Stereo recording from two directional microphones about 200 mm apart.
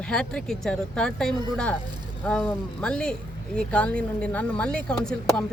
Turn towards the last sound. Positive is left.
turn(degrees=5)  # may be behind; listen again after turning